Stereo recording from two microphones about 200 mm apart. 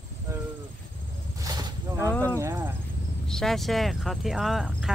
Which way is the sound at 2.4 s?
10° right (ahead or behind).